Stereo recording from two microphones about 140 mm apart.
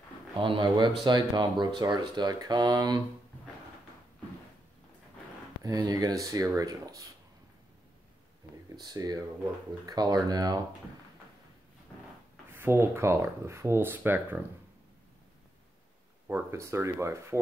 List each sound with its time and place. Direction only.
0.4 s speech: 35° right (ahead or behind)
5.6 s speech: 25° right (ahead or behind)
8.7 s speech: 25° right (ahead or behind)
12.5 s speech: 15° right (ahead or behind)
16.3 s speech: 20° right (ahead or behind)